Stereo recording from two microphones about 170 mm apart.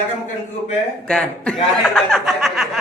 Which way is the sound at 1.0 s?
5° left (ahead or behind).